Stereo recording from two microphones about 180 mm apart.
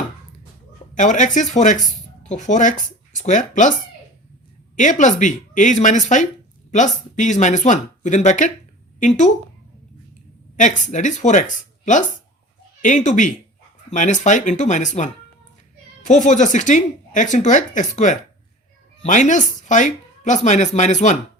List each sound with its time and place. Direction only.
0.9 s speech: 45° left (ahead or behind)
4.8 s speech: 45° left (ahead or behind)
10.6 s speech: 45° left (ahead or behind)